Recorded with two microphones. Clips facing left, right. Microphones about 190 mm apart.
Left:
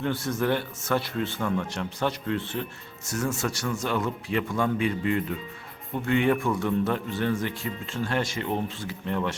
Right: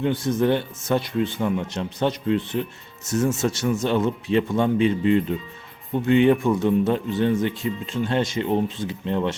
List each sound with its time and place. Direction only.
0.0 s speech: 20° right (ahead or behind)